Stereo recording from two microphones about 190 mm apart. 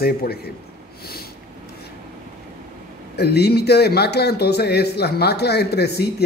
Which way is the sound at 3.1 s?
60° left (ahead or behind).